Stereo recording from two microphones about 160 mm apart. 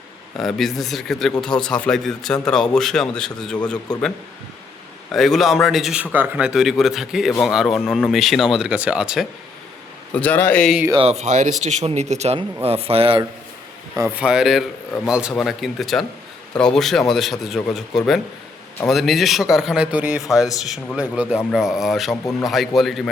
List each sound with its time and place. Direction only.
0.3 s a man's voice: centre (ahead or behind)
5.1 s a man's voice: centre (ahead or behind)
10.1 s a man's voice: 10° left (ahead or behind)
10.9 s speech: 40° right (ahead or behind)
14.2 s a man's voice: 5° right (ahead or behind)